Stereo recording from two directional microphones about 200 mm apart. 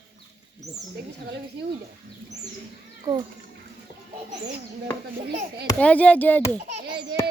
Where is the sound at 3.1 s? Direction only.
20° right (ahead or behind).